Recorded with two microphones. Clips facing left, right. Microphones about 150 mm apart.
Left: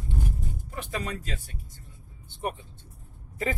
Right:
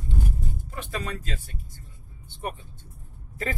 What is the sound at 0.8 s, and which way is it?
Speech, 15° left (ahead or behind).